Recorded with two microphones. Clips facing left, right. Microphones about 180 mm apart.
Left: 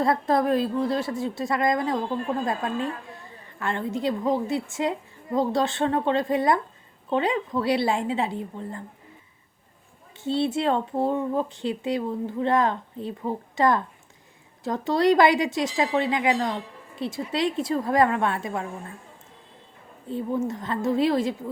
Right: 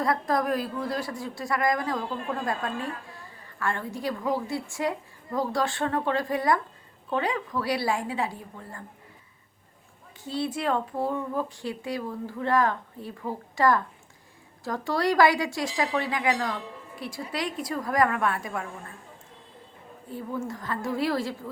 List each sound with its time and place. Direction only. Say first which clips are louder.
0.0 s a woman's voice: left 4 dB; 25° left (ahead or behind)
10.2 s a woman's voice: left 5 dB; 25° left (ahead or behind)
20.1 s a woman's voice: left 6 dB; 25° left (ahead or behind)